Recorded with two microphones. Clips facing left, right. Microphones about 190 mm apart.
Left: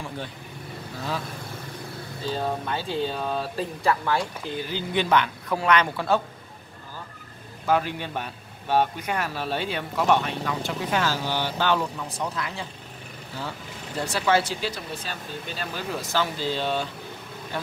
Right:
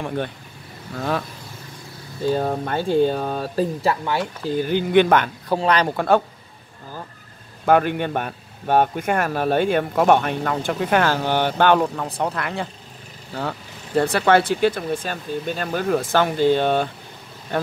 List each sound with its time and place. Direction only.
2.2 s speech: 50° right (ahead or behind)
3.8 s speech: 25° right (ahead or behind)
4.5 s speech: 50° right (ahead or behind)
5.5 s speech: 35° right (ahead or behind)
5.9 s speech: 55° right (ahead or behind)
7.6 s speech: 60° right (ahead or behind)